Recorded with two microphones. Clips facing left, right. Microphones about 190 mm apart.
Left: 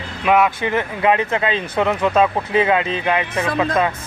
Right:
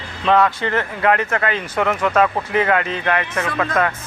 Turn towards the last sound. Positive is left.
turn(degrees=15)  # may be behind; listen again after turning